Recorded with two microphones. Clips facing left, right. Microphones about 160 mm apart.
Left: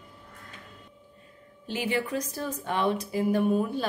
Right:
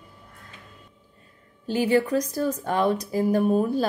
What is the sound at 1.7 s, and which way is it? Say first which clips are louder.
A woman's voice: right 8 dB; 40° right (ahead or behind).